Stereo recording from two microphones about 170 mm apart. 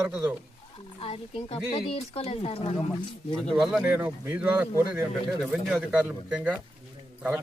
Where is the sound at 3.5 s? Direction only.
Centre (ahead or behind).